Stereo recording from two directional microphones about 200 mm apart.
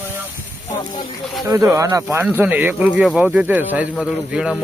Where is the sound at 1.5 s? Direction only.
15° right (ahead or behind).